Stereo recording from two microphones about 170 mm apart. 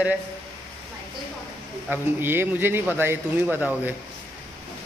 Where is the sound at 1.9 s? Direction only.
10° right (ahead or behind).